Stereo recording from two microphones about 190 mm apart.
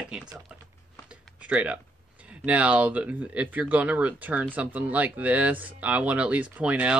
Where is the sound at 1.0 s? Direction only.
5° right (ahead or behind).